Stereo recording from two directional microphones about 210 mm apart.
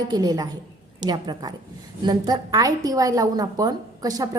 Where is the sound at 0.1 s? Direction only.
20° right (ahead or behind).